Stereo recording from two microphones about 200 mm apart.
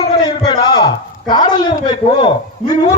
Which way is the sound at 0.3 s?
25° left (ahead or behind).